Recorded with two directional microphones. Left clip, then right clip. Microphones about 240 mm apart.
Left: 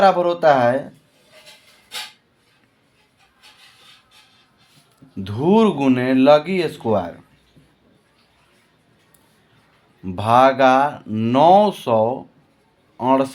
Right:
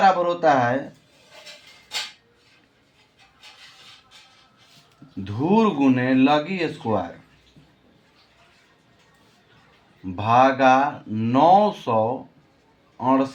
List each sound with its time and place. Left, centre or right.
0.0 s speech: left
5.2 s speech: left
10.2 s speech: left
13.0 s speech: left